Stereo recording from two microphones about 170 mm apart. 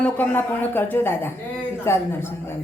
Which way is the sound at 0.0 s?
10° left (ahead or behind).